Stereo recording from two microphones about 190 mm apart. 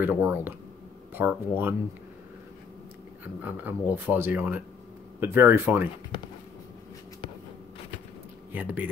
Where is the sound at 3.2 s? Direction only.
10° right (ahead or behind).